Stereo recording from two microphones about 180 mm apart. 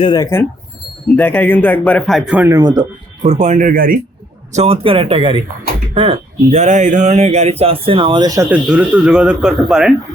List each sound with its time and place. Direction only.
0.0 s speech: 25° left (ahead or behind)
1.1 s speech: 10° left (ahead or behind)
2.5 s speech: 20° right (ahead or behind)
3.2 s speech: 40° right (ahead or behind)
4.5 s speech: 35° right (ahead or behind)
8.4 s speech: 5° right (ahead or behind)